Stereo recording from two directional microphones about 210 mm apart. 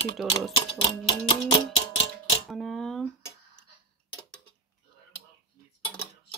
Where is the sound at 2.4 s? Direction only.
Centre (ahead or behind).